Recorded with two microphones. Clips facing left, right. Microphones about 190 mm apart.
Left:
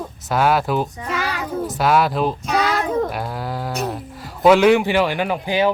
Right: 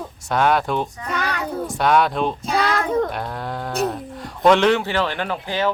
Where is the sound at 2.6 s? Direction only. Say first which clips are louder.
Even; centre (ahead or behind).